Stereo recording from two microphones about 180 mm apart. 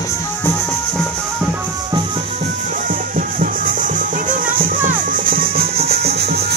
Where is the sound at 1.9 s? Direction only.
25° right (ahead or behind).